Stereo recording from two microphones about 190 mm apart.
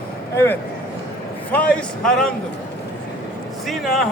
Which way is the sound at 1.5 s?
5° left (ahead or behind).